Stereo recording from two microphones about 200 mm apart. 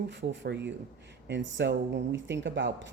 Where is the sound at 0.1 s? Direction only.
60° right (ahead or behind).